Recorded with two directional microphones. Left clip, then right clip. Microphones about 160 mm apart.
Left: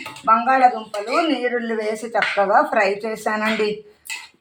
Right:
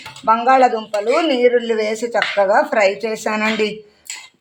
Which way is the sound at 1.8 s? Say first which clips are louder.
Right 3 dB; 40° right (ahead or behind).